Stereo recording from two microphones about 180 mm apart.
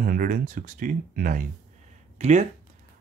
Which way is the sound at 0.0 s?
50° right (ahead or behind).